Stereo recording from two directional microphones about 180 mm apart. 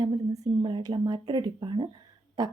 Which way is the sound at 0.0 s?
25° right (ahead or behind).